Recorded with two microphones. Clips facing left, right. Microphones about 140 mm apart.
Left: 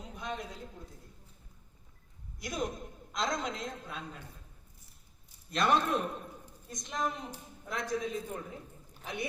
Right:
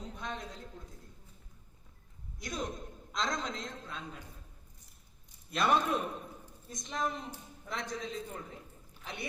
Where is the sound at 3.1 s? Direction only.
5° left (ahead or behind).